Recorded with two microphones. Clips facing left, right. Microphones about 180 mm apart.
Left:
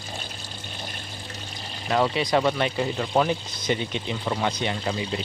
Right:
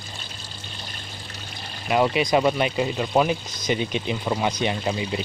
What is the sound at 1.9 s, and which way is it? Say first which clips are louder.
Speech: right 2 dB; 15° right (ahead or behind).